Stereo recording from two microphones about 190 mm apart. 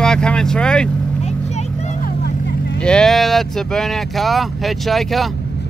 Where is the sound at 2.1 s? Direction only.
60° left (ahead or behind).